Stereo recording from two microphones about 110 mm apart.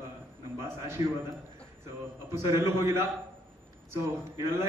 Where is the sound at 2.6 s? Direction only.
25° right (ahead or behind).